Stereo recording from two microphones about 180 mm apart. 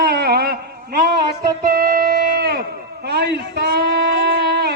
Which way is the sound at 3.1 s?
65° right (ahead or behind).